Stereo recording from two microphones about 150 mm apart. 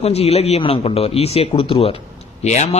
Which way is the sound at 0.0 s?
45° left (ahead or behind).